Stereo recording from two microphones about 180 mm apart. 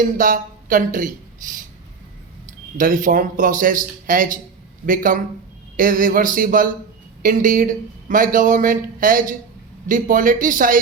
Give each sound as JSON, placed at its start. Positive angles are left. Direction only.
{"t": 0.0, "sound": "speech", "side_deg": -50}
{"t": 2.7, "sound": "speech", "side_deg": -50}